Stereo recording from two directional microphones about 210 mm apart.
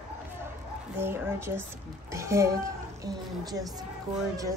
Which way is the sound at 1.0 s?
10° right (ahead or behind).